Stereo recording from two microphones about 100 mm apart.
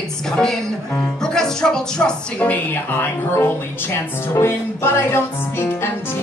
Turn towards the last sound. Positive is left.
turn(degrees=25)  # may be behind; listen again after turning